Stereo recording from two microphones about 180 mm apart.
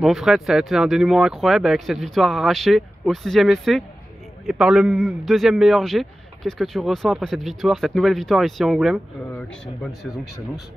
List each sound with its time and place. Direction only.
0.0 s a man's voice: centre (ahead or behind)